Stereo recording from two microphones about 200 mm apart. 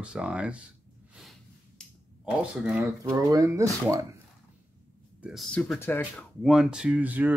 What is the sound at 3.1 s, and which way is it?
Speech, 15° right (ahead or behind).